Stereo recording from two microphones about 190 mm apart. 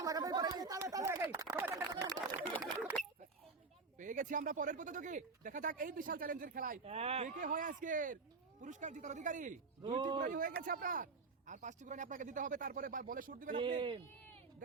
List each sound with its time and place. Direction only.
0.0 s a sound: 20° right (ahead or behind)
3.9 s speech: 40° right (ahead or behind)
6.8 s speech: 30° right (ahead or behind)
10.0 s a man's voice: 25° right (ahead or behind)
10.2 s speech: 45° right (ahead or behind)
13.6 s a man's voice: 25° right (ahead or behind)